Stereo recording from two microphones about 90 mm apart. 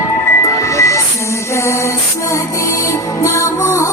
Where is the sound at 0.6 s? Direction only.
35° left (ahead or behind).